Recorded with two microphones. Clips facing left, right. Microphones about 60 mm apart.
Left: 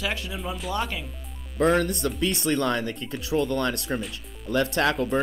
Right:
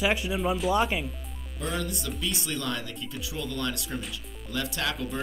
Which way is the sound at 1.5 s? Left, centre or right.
Left.